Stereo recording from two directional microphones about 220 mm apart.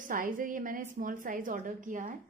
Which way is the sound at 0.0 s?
35° right (ahead or behind).